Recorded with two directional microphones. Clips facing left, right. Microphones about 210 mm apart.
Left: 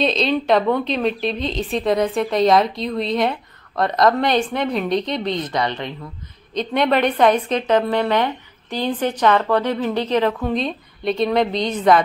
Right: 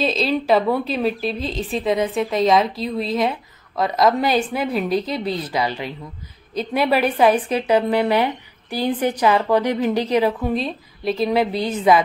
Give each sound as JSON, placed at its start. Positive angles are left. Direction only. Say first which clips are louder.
{"t": 0.0, "sound": "a woman's voice", "louder": "left 1 dB", "side_deg": -5}